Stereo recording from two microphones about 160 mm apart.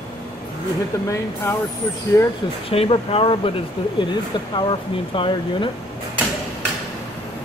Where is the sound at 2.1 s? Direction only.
20° left (ahead or behind).